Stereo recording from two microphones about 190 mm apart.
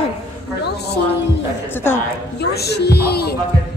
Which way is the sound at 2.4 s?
60° left (ahead or behind).